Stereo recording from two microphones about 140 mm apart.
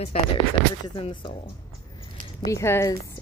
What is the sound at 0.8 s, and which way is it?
Speech, 35° left (ahead or behind).